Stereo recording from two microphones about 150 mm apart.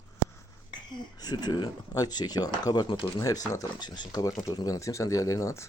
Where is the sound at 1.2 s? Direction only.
25° left (ahead or behind).